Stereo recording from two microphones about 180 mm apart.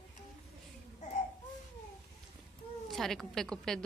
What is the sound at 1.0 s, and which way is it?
Baby cry, 40° left (ahead or behind).